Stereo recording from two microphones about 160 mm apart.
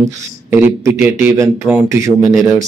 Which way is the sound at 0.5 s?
15° right (ahead or behind).